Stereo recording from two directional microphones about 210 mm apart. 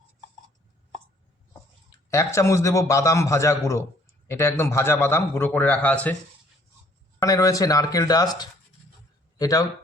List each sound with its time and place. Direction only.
2.0 s a man's voice: 15° left (ahead or behind)
7.2 s a man's voice: 15° left (ahead or behind)